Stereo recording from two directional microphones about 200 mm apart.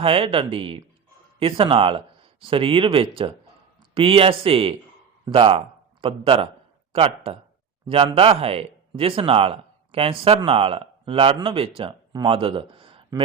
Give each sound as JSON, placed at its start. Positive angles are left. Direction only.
{"t": 0.0, "sound": "a man's voice", "side_deg": -30}